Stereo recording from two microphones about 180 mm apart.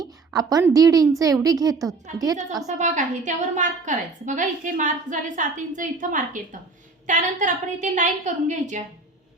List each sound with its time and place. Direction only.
0.0 s a woman's voice: 20° right (ahead or behind)
2.6 s a woman's voice: 45° right (ahead or behind)